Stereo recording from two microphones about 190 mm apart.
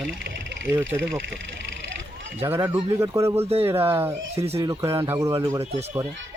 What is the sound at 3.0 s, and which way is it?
Speech, 15° right (ahead or behind).